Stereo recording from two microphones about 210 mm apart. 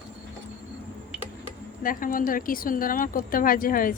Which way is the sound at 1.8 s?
40° left (ahead or behind).